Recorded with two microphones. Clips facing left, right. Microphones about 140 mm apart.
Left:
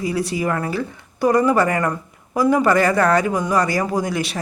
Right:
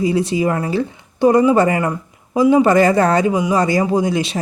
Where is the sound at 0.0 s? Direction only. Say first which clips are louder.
Right 5 dB; 25° right (ahead or behind).